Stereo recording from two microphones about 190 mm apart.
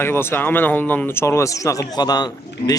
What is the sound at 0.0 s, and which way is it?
Speech, 10° left (ahead or behind).